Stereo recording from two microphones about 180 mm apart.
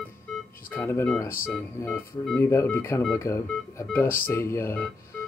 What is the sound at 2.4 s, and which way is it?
Speech, 15° left (ahead or behind).